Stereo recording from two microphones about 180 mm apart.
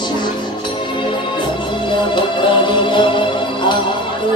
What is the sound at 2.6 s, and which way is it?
Music, 25° left (ahead or behind).